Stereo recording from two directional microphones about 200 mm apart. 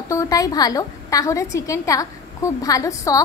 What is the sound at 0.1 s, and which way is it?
A woman's voice, 15° left (ahead or behind).